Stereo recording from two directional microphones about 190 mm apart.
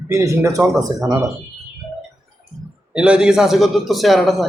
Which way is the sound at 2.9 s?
5° right (ahead or behind).